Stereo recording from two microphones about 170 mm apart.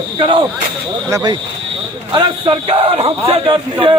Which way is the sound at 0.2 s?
30° right (ahead or behind).